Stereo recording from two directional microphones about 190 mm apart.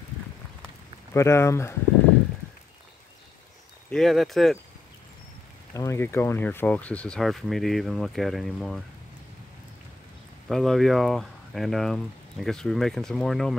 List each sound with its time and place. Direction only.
1.1 s speech: 15° left (ahead or behind)
3.9 s speech: centre (ahead or behind)
5.8 s speech: 15° left (ahead or behind)
10.5 s speech: centre (ahead or behind)